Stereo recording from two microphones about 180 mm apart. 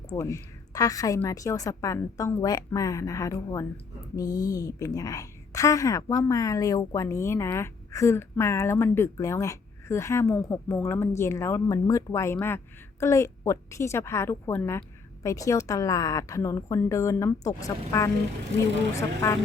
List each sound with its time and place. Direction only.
0.1 s speech: 15° left (ahead or behind)